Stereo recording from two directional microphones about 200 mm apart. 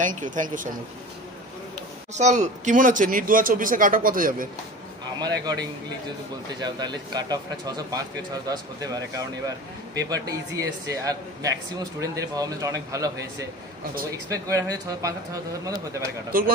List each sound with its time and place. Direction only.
0.0 s speech: 40° right (ahead or behind)
2.1 s speech: 35° right (ahead or behind)
5.2 s speech: 20° right (ahead or behind)
16.3 s speech: 45° right (ahead or behind)